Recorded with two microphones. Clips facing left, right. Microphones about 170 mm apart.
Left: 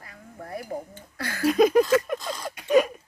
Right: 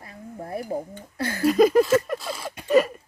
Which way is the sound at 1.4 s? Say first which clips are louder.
Right 1 dB; centre (ahead or behind).